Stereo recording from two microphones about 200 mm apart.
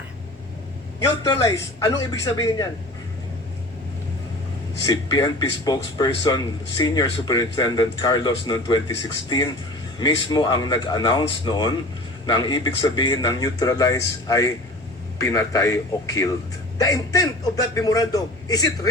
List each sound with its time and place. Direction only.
0.9 s a man's voice: 15° left (ahead or behind)
4.9 s a man's voice: 20° left (ahead or behind)